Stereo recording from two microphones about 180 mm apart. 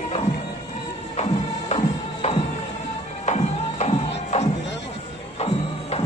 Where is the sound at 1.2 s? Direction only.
35° left (ahead or behind).